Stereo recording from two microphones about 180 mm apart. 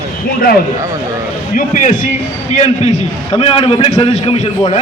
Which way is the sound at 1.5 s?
45° left (ahead or behind).